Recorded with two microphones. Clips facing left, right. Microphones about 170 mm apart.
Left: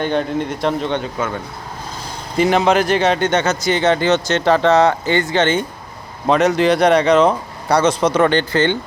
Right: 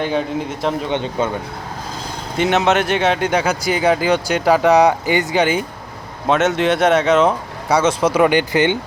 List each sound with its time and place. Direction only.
0.0 s speech: centre (ahead or behind)
0.9 s speech: 25° right (ahead or behind)
2.4 s speech: centre (ahead or behind)